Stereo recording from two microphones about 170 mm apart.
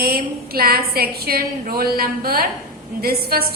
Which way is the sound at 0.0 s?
60° right (ahead or behind).